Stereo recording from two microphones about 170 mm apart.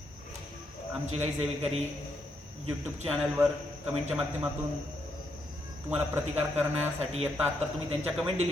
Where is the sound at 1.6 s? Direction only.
35° right (ahead or behind).